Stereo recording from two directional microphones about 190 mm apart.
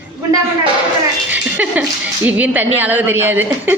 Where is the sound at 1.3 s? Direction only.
10° right (ahead or behind).